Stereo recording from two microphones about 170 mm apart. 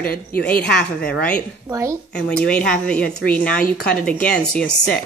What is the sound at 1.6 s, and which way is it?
Speech, 15° right (ahead or behind).